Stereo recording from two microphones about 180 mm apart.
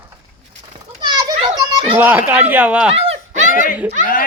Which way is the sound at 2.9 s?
40° right (ahead or behind).